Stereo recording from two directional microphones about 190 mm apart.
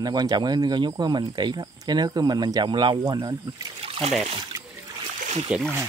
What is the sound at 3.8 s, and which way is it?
Trickle, 30° right (ahead or behind).